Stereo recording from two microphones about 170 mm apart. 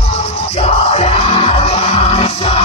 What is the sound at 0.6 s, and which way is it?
Music, 35° left (ahead or behind).